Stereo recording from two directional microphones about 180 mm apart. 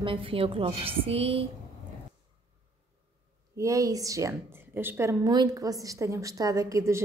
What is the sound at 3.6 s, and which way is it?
A woman's voice, 20° right (ahead or behind).